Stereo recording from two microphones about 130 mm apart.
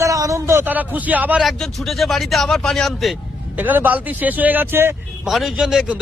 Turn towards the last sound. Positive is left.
turn(degrees=-5)  # may be behind; listen again after turning